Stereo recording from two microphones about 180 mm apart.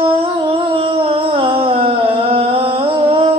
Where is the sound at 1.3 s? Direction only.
30° right (ahead or behind).